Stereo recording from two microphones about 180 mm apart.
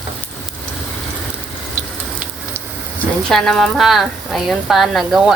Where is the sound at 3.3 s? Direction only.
Centre (ahead or behind).